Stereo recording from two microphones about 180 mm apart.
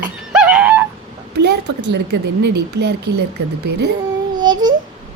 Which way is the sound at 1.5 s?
75° right (ahead or behind).